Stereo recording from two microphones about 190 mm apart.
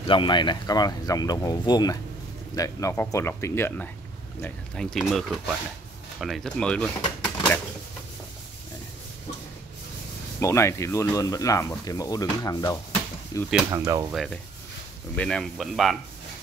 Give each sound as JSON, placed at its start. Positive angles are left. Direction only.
{"t": 0.1, "sound": "speech", "side_deg": 25}
{"t": 7.2, "sound": "a sound", "side_deg": 10}
{"t": 10.4, "sound": "speech", "side_deg": 15}
{"t": 13.7, "sound": "speech", "side_deg": -15}
{"t": 14.1, "sound": "speech", "side_deg": 0}